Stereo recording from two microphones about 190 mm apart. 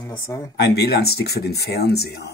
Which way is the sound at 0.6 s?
60° left (ahead or behind).